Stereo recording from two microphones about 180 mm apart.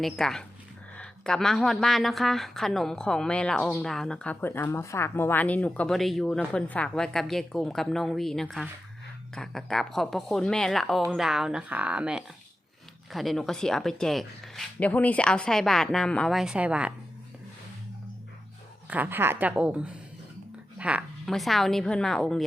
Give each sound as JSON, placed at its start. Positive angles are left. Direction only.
{"t": 0.0, "sound": "speech", "side_deg": 5}
{"t": 18.9, "sound": "a woman's voice", "side_deg": -10}